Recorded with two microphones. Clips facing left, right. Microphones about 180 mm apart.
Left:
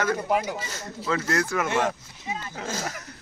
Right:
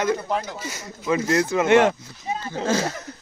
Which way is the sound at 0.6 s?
15° right (ahead or behind).